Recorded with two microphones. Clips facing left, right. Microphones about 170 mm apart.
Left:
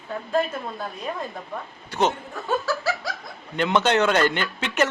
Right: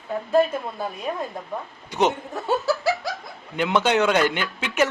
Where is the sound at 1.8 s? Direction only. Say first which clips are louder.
Right 1 dB; 15° right (ahead or behind).